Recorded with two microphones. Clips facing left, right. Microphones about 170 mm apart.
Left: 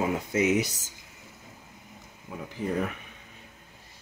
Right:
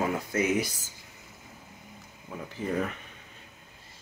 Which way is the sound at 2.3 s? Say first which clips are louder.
Left 1 dB; 5° left (ahead or behind).